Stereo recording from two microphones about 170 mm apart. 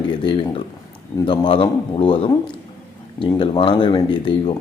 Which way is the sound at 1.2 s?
30° left (ahead or behind).